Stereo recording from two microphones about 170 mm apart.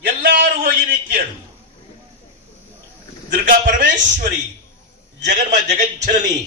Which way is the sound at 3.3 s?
50° right (ahead or behind).